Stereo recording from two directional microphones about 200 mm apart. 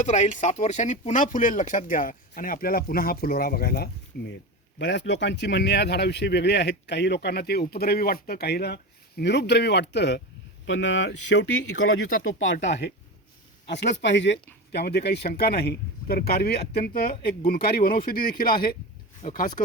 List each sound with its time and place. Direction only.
0.0 s speech: 40° left (ahead or behind); by 12.2 s 55° left (ahead or behind)
12.2 s speech: 75° left (ahead or behind)
13.7 s speech: 60° left (ahead or behind); by 19.7 s 40° left (ahead or behind)